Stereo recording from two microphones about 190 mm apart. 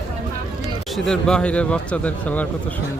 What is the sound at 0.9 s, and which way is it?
A man's voice, centre (ahead or behind).